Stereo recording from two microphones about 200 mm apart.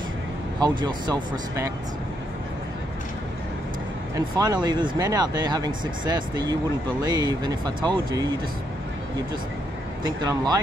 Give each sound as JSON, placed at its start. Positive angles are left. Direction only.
{"t": 0.6, "sound": "speech", "side_deg": -20}
{"t": 4.1, "sound": "speech", "side_deg": -20}
{"t": 10.0, "sound": "speech", "side_deg": -20}